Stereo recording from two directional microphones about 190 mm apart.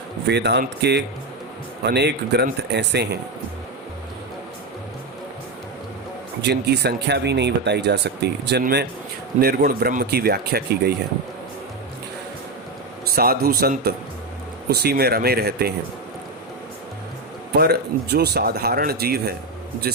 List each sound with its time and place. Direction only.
0.3 s speech: 60° right (ahead or behind)
6.4 s speech: 60° right (ahead or behind)
13.1 s a man's voice: 50° right (ahead or behind)
17.5 s speech: 55° right (ahead or behind)